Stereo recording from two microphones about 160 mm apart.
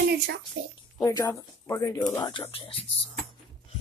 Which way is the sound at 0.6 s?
90° right.